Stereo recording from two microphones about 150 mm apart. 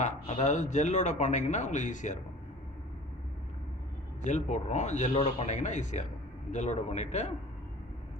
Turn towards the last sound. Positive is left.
turn(degrees=50)  # may be behind; listen again after turning